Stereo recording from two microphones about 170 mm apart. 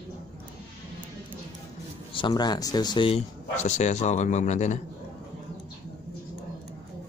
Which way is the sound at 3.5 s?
45° left (ahead or behind).